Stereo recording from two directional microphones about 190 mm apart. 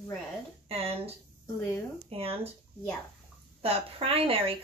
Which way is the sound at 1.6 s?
10° left (ahead or behind).